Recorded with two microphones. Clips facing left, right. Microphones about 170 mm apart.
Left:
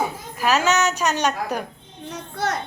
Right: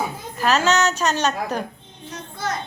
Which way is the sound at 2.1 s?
70° left (ahead or behind).